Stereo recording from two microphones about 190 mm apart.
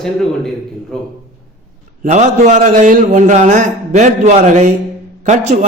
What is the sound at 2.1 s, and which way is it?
A man's voice, 35° right (ahead or behind).